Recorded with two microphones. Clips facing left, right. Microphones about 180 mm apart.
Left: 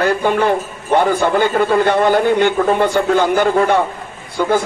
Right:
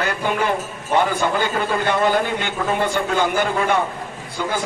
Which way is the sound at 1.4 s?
55° left (ahead or behind).